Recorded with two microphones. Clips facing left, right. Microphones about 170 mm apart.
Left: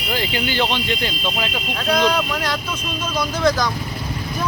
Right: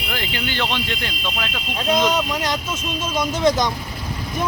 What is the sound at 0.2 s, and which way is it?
Speech, 5° left (ahead or behind).